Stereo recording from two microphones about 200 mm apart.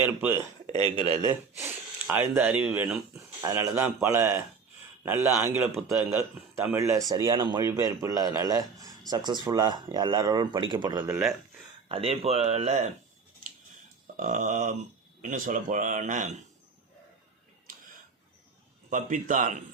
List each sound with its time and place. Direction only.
0.0 s speech: 10° right (ahead or behind)
2.0 s speech: 10° right (ahead or behind)
11.1 s speech: centre (ahead or behind)
11.9 s speech: 30° right (ahead or behind)
14.2 s speech: 40° right (ahead or behind)
18.9 s speech: 40° right (ahead or behind)